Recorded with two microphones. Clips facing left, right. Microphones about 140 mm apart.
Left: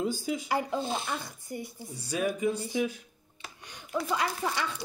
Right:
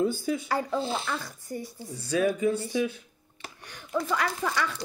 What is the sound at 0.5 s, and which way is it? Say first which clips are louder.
A child's voice: left 1 dB; 15° left (ahead or behind).